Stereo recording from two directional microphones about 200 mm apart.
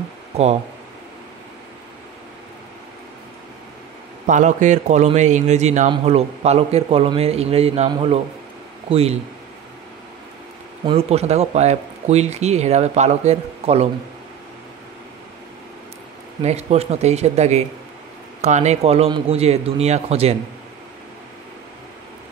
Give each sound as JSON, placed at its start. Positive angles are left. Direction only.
{"t": 0.3, "sound": "speech", "side_deg": -30}
{"t": 4.3, "sound": "a man's voice", "side_deg": -40}
{"t": 10.9, "sound": "a man's voice", "side_deg": -30}
{"t": 16.4, "sound": "a man's voice", "side_deg": -30}